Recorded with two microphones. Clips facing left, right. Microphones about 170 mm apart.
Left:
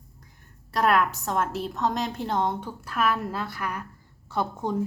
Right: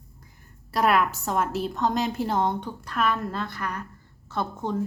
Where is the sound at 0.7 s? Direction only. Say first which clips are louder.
Even; 5° right (ahead or behind).